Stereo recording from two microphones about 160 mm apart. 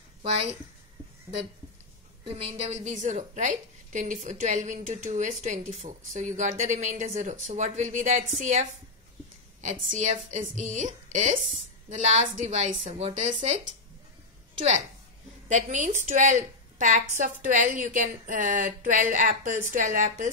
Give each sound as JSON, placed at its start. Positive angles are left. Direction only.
{"t": 0.2, "sound": "speech", "side_deg": -40}
{"t": 1.3, "sound": "speech", "side_deg": -15}
{"t": 2.2, "sound": "a woman's voice", "side_deg": -35}
{"t": 15.4, "sound": "a woman's voice", "side_deg": -50}